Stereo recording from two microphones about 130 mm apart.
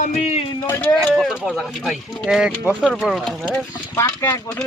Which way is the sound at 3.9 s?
20° left (ahead or behind).